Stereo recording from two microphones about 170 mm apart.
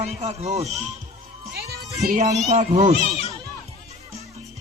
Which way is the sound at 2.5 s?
40° right (ahead or behind).